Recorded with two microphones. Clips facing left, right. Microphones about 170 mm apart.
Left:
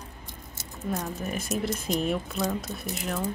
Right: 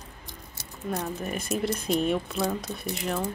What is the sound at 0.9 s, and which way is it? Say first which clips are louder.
Speech: right 1 dB; centre (ahead or behind).